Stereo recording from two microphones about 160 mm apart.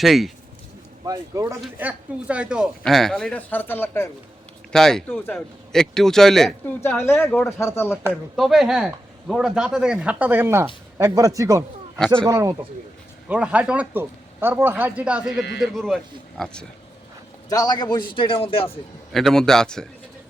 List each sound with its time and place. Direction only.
0.0 s speech: centre (ahead or behind)
1.0 s speech: 20° right (ahead or behind)
1.6 s speech: 10° right (ahead or behind); by 4.1 s 15° left (ahead or behind)
4.7 s speech: 5° left (ahead or behind)
6.8 s speech: 15° left (ahead or behind)
8.4 s speech: centre (ahead or behind); by 11.6 s 20° right (ahead or behind)
11.9 s speech: 5° left (ahead or behind)
12.2 s speech: 20° right (ahead or behind)
13.2 s speech: 5° right (ahead or behind)
17.5 s a man's voice: 25° left (ahead or behind)
19.1 s speech: centre (ahead or behind)